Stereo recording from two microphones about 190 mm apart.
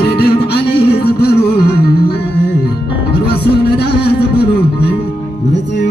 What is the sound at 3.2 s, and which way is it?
Music, 60° left (ahead or behind).